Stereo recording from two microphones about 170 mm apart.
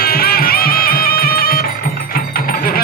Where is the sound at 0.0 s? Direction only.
65° left (ahead or behind).